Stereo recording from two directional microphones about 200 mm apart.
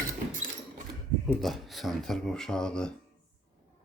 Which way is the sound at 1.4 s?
Centre (ahead or behind).